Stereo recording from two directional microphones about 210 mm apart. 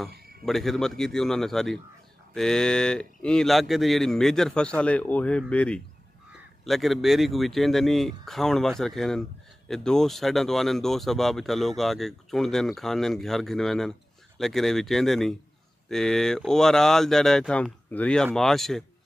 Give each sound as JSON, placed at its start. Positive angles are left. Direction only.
{"t": 0.1, "sound": "cricket", "side_deg": -45}
{"t": 0.5, "sound": "speech", "side_deg": 0}